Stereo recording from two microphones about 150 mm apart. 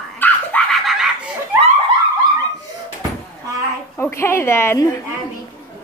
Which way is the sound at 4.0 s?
15° left (ahead or behind).